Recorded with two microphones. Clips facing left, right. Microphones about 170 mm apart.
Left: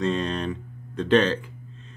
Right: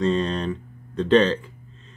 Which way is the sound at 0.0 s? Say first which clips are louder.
Right 3 dB; 5° left (ahead or behind).